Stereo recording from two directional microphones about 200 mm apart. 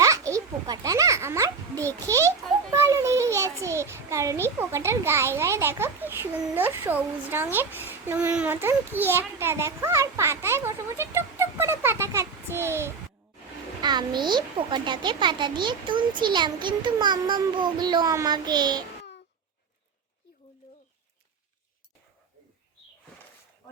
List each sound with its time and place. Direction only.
0.0 s a child's voice: 15° right (ahead or behind)